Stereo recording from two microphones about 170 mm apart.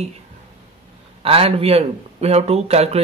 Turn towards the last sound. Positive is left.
turn(degrees=-40)  # may be behind; listen again after turning